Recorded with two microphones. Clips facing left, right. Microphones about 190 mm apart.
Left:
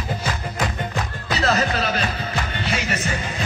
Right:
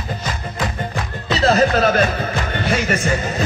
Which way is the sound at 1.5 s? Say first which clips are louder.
Right 7 dB; 50° right (ahead or behind).